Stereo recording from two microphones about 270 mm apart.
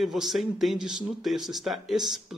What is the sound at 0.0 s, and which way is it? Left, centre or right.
A woman's voice, centre.